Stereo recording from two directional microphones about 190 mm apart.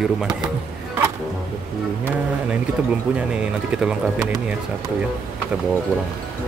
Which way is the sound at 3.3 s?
5° right (ahead or behind).